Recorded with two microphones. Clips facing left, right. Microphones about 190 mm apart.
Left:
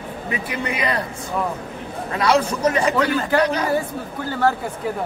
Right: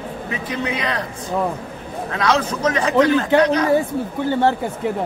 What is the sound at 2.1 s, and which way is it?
A man's voice, 10° left (ahead or behind).